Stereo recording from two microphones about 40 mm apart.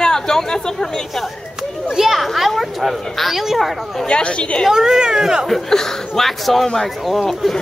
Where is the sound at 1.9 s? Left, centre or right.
Centre.